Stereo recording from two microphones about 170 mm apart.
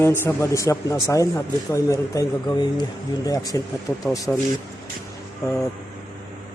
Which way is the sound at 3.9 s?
10° left (ahead or behind).